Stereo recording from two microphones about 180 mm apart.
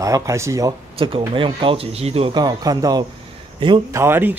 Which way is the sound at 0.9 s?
30° right (ahead or behind).